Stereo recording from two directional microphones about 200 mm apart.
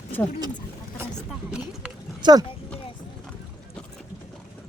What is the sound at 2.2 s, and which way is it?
Speech, 20° right (ahead or behind).